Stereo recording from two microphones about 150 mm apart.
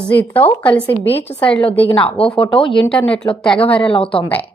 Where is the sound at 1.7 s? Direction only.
40° left (ahead or behind).